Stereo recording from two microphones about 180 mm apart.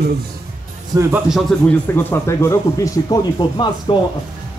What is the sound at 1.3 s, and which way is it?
Speech, 5° left (ahead or behind).